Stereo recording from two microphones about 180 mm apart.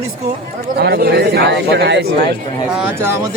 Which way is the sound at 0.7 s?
65° right (ahead or behind).